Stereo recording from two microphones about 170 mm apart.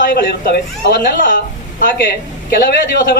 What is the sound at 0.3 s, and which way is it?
Speech, 65° left (ahead or behind).